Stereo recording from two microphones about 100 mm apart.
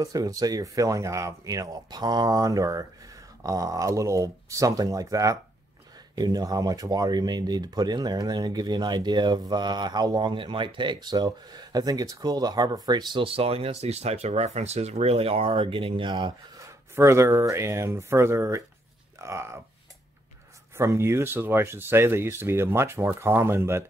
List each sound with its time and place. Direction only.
0.0 s speech: 40° right (ahead or behind)
10.3 s speech: 55° right (ahead or behind)
13.2 s speech: 70° right (ahead or behind); by 16.3 s 50° right (ahead or behind)
16.6 s speech: 30° right (ahead or behind)
20.7 s speech: 30° right (ahead or behind)